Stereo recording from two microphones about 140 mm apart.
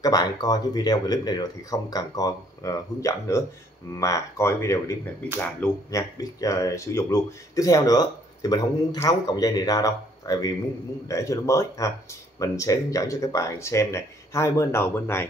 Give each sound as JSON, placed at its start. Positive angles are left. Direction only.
{"t": 0.0, "sound": "speech", "side_deg": 30}